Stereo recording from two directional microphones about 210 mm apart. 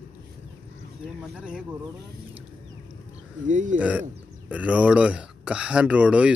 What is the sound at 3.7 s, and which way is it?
Speech, 5° right (ahead or behind).